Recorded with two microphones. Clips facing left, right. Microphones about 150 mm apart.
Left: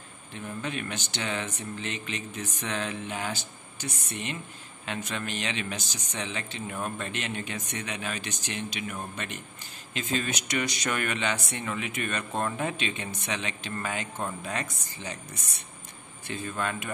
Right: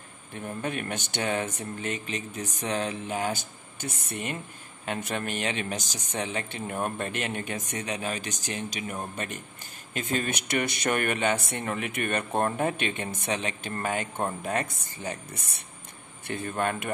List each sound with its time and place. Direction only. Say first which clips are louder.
0.3 s speech: right 2 dB; 50° right (ahead or behind)